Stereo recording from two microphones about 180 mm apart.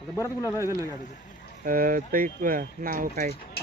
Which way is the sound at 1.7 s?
50° right (ahead or behind).